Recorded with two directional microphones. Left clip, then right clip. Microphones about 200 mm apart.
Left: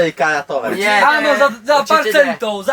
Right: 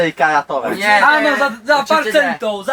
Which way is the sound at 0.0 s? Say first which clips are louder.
Right 1 dB; centre (ahead or behind).